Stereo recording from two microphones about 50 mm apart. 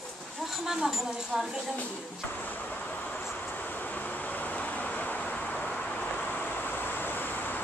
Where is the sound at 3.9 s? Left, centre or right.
Left.